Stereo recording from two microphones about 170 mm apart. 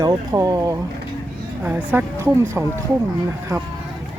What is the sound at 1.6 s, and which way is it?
A woman's voice, 10° right (ahead or behind).